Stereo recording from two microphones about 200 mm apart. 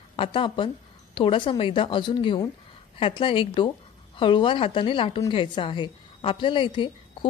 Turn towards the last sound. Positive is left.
turn(degrees=25)  # may be behind; listen again after turning